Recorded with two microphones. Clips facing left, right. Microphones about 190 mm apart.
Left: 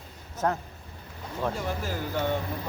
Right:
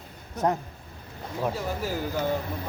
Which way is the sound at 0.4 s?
20° right (ahead or behind).